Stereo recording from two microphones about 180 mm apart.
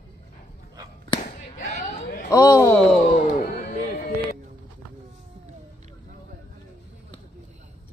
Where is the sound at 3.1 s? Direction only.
60° left (ahead or behind).